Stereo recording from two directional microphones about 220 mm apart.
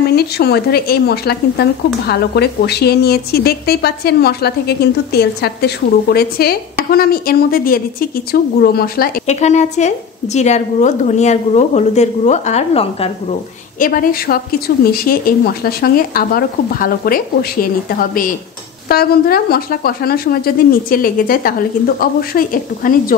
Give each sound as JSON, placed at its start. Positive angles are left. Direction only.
{"t": 0.1, "sound": "speech", "side_deg": 45}